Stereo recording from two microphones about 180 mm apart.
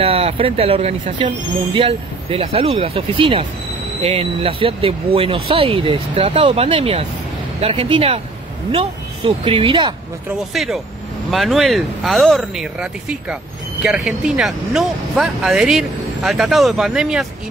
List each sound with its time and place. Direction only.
0.0 s speech: 35° right (ahead or behind)
10.5 s speech: centre (ahead or behind)